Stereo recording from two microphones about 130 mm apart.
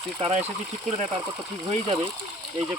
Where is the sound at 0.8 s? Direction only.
45° right (ahead or behind).